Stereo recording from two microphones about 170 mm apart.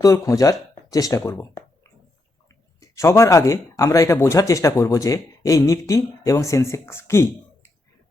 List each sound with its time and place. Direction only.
0.0 s speech: 20° left (ahead or behind)
2.8 s speech: 15° left (ahead or behind)